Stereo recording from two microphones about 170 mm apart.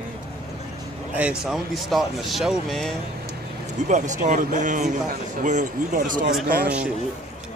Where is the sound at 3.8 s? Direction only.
45° right (ahead or behind).